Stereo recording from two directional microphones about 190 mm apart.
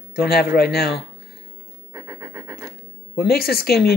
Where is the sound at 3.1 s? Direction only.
55° left (ahead or behind).